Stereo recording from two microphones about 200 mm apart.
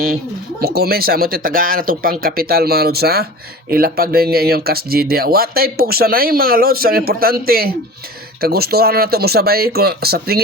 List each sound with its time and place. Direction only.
0.6 s speech: 50° right (ahead or behind)